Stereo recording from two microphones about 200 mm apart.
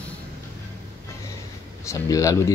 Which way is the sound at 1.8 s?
15° left (ahead or behind).